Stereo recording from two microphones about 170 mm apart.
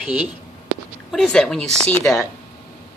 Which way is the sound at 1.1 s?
5° left (ahead or behind).